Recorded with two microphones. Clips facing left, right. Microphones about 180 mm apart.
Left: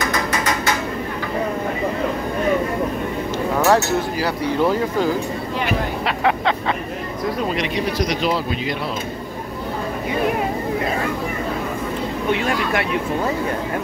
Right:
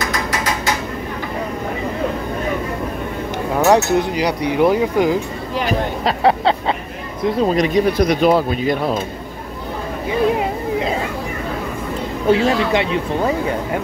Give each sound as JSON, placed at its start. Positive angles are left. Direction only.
{"t": 3.6, "sound": "speech", "side_deg": -15}
{"t": 5.7, "sound": "vehicle", "side_deg": -35}
{"t": 7.5, "sound": "speech", "side_deg": -45}
{"t": 12.3, "sound": "speech", "side_deg": -30}